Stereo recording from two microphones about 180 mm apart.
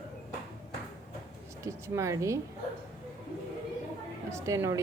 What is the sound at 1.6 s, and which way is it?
Speech, 15° right (ahead or behind).